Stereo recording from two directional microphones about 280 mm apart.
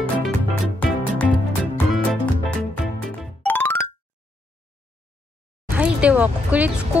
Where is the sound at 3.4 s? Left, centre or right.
Centre.